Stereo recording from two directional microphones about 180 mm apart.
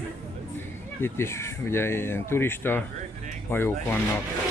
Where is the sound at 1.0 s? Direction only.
15° left (ahead or behind).